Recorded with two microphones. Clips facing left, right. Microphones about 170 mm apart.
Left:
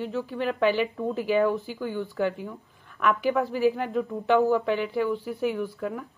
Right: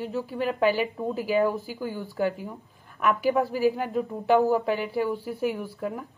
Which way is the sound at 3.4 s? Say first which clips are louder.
Even; 40° right (ahead or behind).